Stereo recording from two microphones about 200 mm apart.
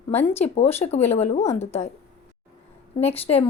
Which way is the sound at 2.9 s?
30° left (ahead or behind).